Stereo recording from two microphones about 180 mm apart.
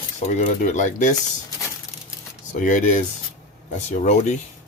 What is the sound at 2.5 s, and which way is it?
Speech, 45° left (ahead or behind).